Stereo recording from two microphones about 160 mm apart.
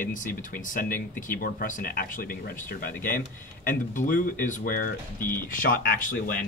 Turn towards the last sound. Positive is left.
turn(degrees=55)  # may be behind; listen again after turning